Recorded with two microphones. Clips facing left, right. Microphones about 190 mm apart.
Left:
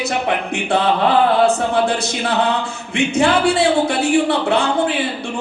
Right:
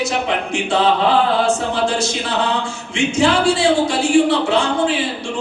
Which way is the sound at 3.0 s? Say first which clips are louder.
Even; 60° left (ahead or behind).